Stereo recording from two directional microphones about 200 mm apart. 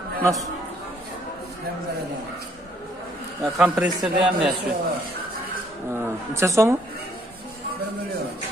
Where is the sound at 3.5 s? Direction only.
5° right (ahead or behind).